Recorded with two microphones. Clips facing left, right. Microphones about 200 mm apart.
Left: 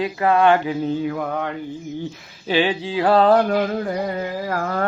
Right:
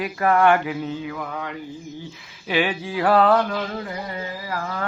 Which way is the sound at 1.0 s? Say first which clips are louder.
Left 6 dB; 50° left (ahead or behind).